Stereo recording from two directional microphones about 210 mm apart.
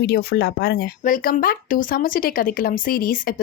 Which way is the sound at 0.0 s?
50° left (ahead or behind).